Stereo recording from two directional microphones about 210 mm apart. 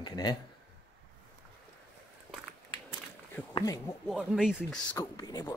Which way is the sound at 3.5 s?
15° left (ahead or behind).